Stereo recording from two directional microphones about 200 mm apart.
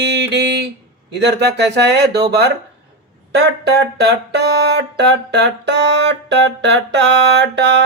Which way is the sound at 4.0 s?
55° right (ahead or behind).